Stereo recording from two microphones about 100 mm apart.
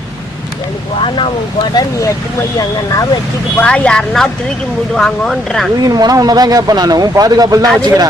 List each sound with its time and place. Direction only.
1.0 s speech: 60° left (ahead or behind)
1.7 s speech: 35° left (ahead or behind)
3.6 s speech: 10° left (ahead or behind)
5.8 s speech: 40° right (ahead or behind)